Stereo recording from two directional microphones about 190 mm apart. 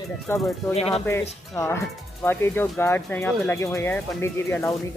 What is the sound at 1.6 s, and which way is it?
Speech, 15° left (ahead or behind).